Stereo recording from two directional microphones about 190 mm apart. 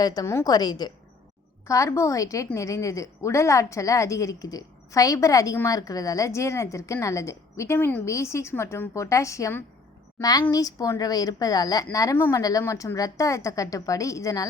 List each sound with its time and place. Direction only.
0.0 s a woman's voice: 20° left (ahead or behind)